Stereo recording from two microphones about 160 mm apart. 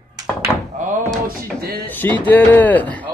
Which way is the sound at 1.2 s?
70° right (ahead or behind).